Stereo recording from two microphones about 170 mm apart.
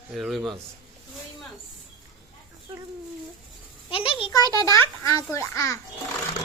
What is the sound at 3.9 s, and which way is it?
A child's voice, 30° left (ahead or behind).